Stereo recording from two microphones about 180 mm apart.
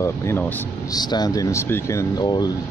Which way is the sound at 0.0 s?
15° left (ahead or behind).